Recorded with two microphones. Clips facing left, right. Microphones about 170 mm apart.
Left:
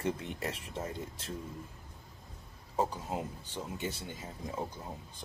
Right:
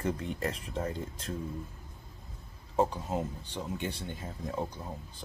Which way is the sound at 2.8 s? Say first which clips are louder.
Right 4 dB; 5° left (ahead or behind).